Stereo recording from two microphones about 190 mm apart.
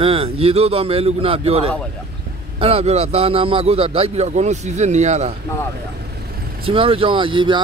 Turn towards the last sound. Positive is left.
turn(degrees=-25)  # may be behind; listen again after turning